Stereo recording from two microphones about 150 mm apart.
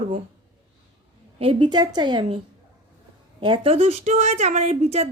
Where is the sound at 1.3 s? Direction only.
35° right (ahead or behind).